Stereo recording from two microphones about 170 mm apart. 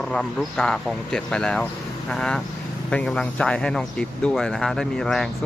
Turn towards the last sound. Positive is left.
turn(degrees=0)  # may be behind; listen again after turning